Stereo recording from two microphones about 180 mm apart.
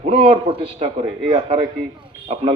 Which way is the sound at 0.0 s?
30° right (ahead or behind).